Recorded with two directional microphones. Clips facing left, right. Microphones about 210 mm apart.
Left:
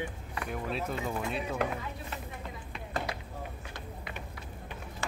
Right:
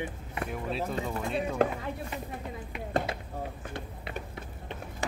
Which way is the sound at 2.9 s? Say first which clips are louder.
Right 5 dB; 30° right (ahead or behind).